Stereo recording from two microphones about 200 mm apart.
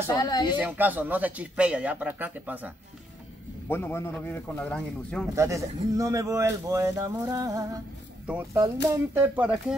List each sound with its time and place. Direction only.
0.1 s speech: 20° left (ahead or behind)
0.6 s speech: 10° right (ahead or behind)
3.6 s a man's voice: 10° left (ahead or behind)
5.3 s speech: 15° right (ahead or behind)